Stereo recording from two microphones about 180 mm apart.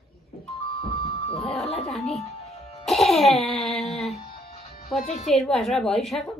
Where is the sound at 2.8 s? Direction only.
Centre (ahead or behind).